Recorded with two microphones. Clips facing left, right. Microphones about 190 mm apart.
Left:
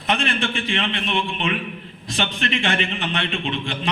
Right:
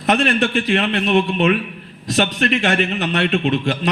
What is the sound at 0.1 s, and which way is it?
A man's voice, 40° right (ahead or behind).